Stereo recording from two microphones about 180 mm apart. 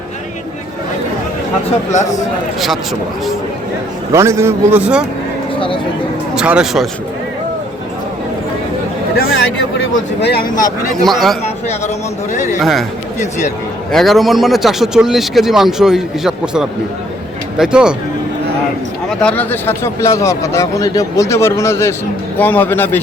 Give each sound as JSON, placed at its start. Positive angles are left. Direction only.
{"t": 1.9, "sound": "a man's voice", "side_deg": 40}
{"t": 4.1, "sound": "a man's voice", "side_deg": -15}
{"t": 5.5, "sound": "speech", "side_deg": 30}
{"t": 6.3, "sound": "speech", "side_deg": -5}
{"t": 9.1, "sound": "speech", "side_deg": 75}
{"t": 11.0, "sound": "speech", "side_deg": 0}
{"t": 12.3, "sound": "a man's voice", "side_deg": 40}
{"t": 13.9, "sound": "speech", "side_deg": 0}
{"t": 19.2, "sound": "speech", "side_deg": 10}